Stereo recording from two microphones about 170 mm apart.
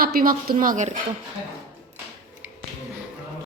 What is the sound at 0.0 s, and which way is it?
Speech, 60° right (ahead or behind).